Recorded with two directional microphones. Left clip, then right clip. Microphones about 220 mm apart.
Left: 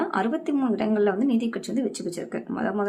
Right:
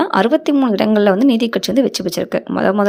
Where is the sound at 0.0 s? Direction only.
45° right (ahead or behind).